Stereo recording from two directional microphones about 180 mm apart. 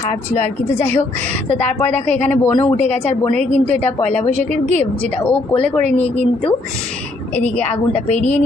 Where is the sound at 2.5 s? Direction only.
25° left (ahead or behind).